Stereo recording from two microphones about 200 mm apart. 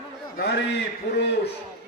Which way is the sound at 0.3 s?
55° left (ahead or behind).